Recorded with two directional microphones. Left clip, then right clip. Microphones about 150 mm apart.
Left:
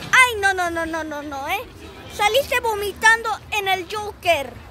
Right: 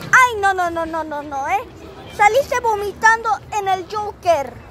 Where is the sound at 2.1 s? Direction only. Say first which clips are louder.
Right 4 dB; 5° left (ahead or behind).